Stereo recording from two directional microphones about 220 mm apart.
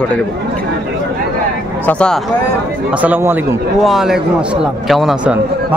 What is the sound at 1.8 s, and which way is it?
Speech, 5° left (ahead or behind).